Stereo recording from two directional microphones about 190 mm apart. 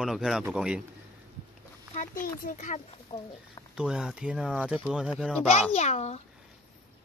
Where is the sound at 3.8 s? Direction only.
5° right (ahead or behind).